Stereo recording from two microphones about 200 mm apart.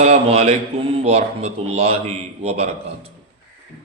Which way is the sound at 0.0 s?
30° right (ahead or behind).